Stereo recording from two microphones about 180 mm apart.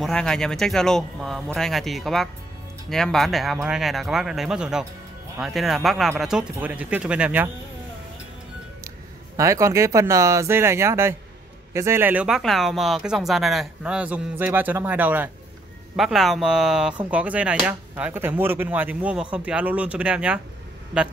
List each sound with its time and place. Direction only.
0.0 s speech: 5° left (ahead or behind)
9.4 s speech: 15° right (ahead or behind)